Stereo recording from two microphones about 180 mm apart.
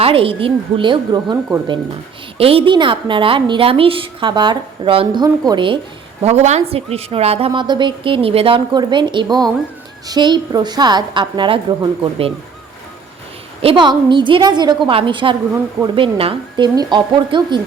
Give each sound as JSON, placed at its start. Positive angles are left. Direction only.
{"t": 0.0, "sound": "a woman's voice", "side_deg": -30}
{"t": 2.4, "sound": "a woman's voice", "side_deg": -30}
{"t": 6.2, "sound": "a woman's voice", "side_deg": -40}
{"t": 13.6, "sound": "a woman's voice", "side_deg": -30}